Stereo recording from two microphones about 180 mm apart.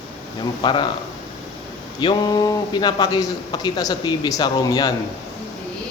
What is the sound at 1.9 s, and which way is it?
Speech, 25° left (ahead or behind).